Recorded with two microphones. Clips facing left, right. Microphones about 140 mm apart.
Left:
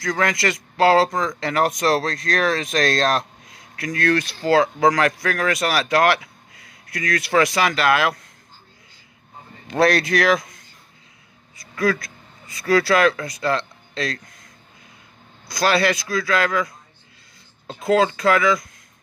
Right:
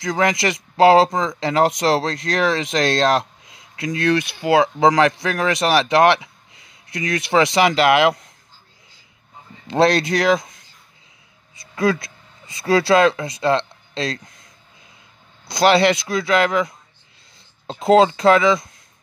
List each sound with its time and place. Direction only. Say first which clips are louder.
0.0 s speech: right 2 dB; 20° right (ahead or behind)
9.7 s speech: right 2 dB; 25° right (ahead or behind)
11.5 s speech: right 2 dB; 25° right (ahead or behind)
15.4 s speech: right 5 dB; 25° right (ahead or behind)